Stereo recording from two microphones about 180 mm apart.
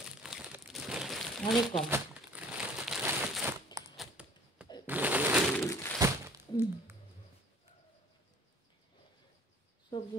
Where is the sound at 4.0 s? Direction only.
5° right (ahead or behind).